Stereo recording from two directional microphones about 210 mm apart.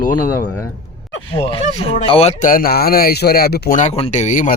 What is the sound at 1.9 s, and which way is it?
Speech, 30° left (ahead or behind).